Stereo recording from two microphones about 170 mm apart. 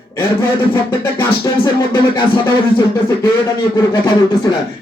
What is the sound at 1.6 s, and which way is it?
Music, 25° left (ahead or behind).